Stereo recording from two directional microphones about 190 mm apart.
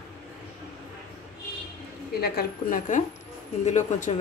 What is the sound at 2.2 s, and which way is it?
A woman's voice, 50° left (ahead or behind).